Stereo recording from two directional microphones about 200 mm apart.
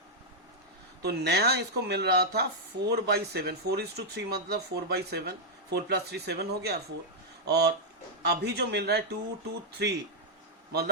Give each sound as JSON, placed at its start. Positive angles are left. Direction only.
{"t": 1.0, "sound": "speech", "side_deg": -55}